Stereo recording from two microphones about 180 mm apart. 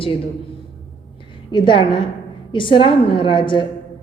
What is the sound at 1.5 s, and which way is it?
A woman's voice, 25° left (ahead or behind).